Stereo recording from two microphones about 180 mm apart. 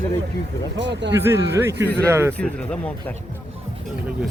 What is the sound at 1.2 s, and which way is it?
Speech, 15° right (ahead or behind).